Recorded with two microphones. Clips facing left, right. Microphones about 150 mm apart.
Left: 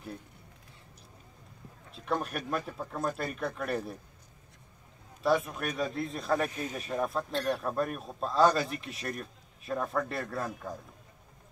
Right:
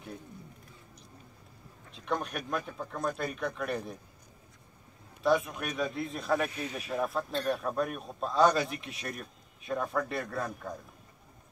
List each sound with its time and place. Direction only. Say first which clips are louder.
2.0 s speech: left 1 dB; 5° left (ahead or behind)
5.2 s speech: even; centre (ahead or behind)
6.5 s speech: left 1 dB; 45° left (ahead or behind)
6.8 s speech: even; centre (ahead or behind)